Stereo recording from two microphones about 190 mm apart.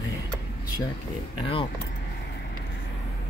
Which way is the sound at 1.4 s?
30° left (ahead or behind).